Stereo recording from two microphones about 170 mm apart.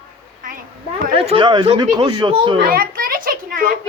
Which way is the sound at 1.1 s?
30° right (ahead or behind).